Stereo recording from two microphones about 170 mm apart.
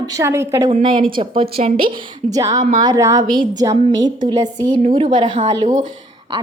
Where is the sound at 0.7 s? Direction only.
35° right (ahead or behind).